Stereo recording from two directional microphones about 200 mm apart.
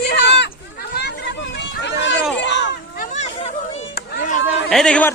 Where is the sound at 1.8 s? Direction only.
65° left (ahead or behind).